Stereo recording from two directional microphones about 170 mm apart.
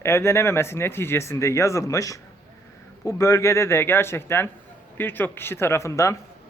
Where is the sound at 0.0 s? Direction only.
15° left (ahead or behind).